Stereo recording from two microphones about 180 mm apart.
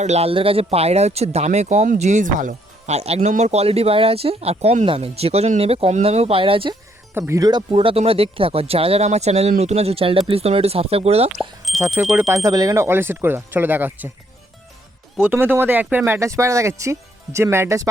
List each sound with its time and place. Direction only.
0.0 s speech: 35° right (ahead or behind)
7.1 s speech: 15° right (ahead or behind); by 11.3 s 35° right (ahead or behind)
11.3 s speech: centre (ahead or behind)
12.3 s speech: 20° right (ahead or behind)
15.2 s speech: 10° right (ahead or behind)